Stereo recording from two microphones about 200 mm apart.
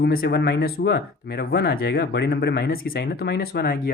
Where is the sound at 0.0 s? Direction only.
50° left (ahead or behind).